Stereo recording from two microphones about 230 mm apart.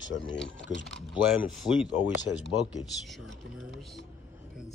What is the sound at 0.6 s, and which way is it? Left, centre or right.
Speech, left.